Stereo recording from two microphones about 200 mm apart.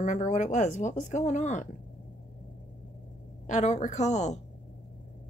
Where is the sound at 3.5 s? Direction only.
35° left (ahead or behind).